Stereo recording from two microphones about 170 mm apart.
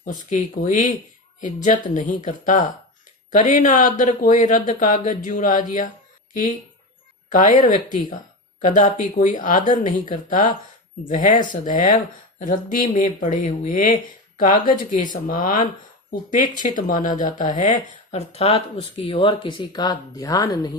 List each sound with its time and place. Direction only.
0.0 s speech: 50° left (ahead or behind)
7.3 s speech: 50° left (ahead or behind)
16.6 s speech: 50° left (ahead or behind); by 20.7 s 25° left (ahead or behind)